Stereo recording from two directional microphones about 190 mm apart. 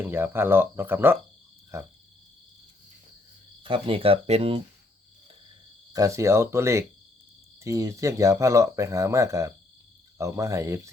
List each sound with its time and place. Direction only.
0.0 s speech: 10° right (ahead or behind)
3.6 s speech: 30° right (ahead or behind)
5.9 s speech: 15° right (ahead or behind)